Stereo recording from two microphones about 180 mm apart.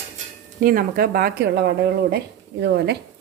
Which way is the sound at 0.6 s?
50° right (ahead or behind).